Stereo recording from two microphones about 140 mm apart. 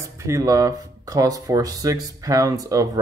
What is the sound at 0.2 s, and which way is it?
Speech, 25° right (ahead or behind).